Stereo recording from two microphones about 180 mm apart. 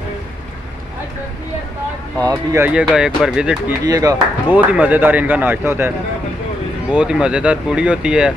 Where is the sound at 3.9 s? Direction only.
20° right (ahead or behind).